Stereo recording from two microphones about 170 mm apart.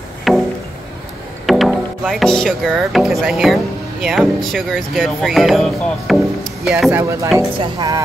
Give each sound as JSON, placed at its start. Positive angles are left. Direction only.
{"t": 0.3, "sound": "music", "side_deg": 0}
{"t": 1.4, "sound": "speech", "side_deg": 0}